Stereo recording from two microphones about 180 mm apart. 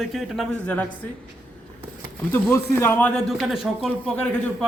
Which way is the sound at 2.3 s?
15° left (ahead or behind).